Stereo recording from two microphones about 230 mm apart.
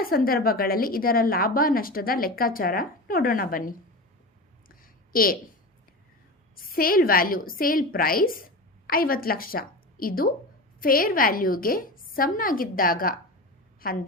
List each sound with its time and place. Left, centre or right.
0.0 s a woman's voice: left
4.7 s a sound: left
6.7 s a woman's voice: left